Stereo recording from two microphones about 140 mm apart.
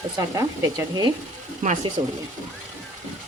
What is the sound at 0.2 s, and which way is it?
Speech, 25° right (ahead or behind).